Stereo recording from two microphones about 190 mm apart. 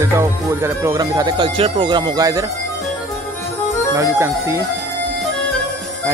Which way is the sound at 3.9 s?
15° right (ahead or behind).